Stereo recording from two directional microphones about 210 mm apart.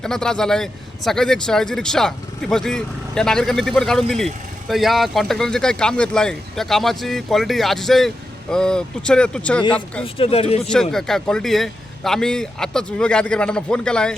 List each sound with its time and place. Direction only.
0.0 s speech: 5° left (ahead or behind)
10.0 s speech: 25° left (ahead or behind)
10.7 s speech: 5° left (ahead or behind)